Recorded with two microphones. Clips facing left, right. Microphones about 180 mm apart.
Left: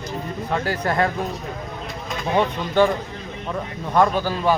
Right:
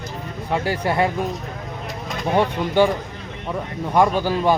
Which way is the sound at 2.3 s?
10° right (ahead or behind).